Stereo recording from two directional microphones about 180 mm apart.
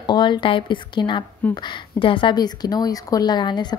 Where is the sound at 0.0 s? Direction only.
25° left (ahead or behind).